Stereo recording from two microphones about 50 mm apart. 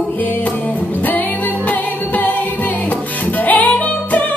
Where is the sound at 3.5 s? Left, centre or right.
Left.